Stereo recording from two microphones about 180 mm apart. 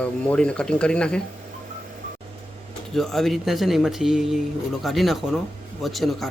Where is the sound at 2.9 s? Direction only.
Centre (ahead or behind).